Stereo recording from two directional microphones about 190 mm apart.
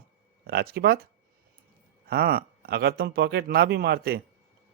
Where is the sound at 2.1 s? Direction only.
55° right (ahead or behind).